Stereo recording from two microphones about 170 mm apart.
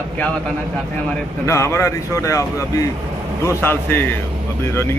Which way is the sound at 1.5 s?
15° left (ahead or behind).